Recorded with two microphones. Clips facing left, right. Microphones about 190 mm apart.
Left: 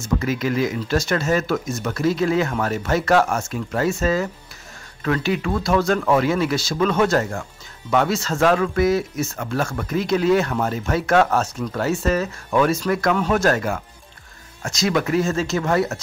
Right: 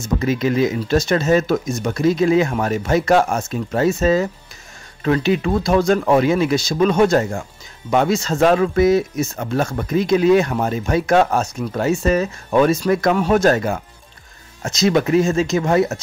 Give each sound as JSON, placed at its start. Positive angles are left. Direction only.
{"t": 0.0, "sound": "speech", "side_deg": -20}